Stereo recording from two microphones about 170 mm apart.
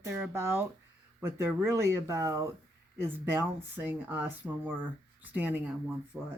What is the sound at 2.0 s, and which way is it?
Speech, 20° right (ahead or behind).